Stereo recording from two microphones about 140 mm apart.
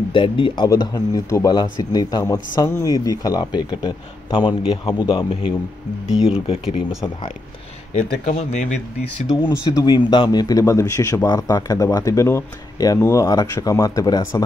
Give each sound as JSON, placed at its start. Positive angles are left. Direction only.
{"t": 0.1, "sound": "a man's voice", "side_deg": 35}
{"t": 6.2, "sound": "speech", "side_deg": 45}
{"t": 7.9, "sound": "speech", "side_deg": 55}
{"t": 9.4, "sound": "speech", "side_deg": 20}